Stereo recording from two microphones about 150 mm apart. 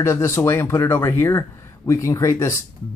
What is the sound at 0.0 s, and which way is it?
Speech, 15° left (ahead or behind).